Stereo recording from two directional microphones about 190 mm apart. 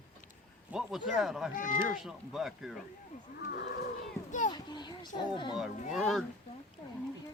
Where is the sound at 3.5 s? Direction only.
60° left (ahead or behind).